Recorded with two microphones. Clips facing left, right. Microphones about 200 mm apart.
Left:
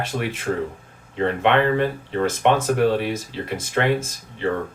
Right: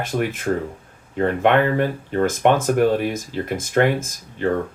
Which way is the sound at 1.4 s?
50° right (ahead or behind).